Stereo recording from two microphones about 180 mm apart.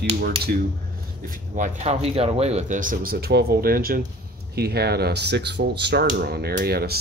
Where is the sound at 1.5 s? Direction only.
40° right (ahead or behind).